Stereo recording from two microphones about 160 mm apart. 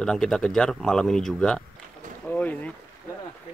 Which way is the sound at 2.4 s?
10° left (ahead or behind).